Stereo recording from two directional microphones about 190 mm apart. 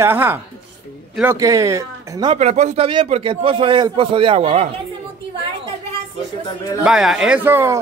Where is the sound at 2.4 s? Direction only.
35° right (ahead or behind).